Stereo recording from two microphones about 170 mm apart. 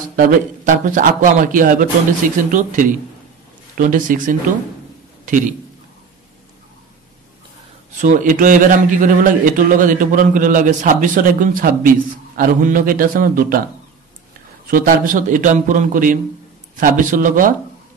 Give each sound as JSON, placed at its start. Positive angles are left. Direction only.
{"t": 0.1, "sound": "a man's voice", "side_deg": -55}
{"t": 8.0, "sound": "a man's voice", "side_deg": -50}
{"t": 14.7, "sound": "a man's voice", "side_deg": -50}